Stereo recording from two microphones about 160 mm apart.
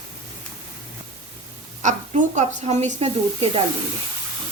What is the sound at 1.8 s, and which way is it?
Speech, 50° right (ahead or behind).